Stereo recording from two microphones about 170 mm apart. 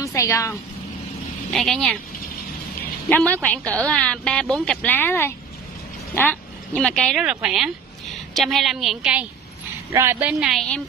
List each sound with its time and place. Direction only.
0.0 s a woman's voice: 20° left (ahead or behind)
1.5 s a woman's voice: 5° left (ahead or behind)
3.1 s a woman's voice: 10° left (ahead or behind)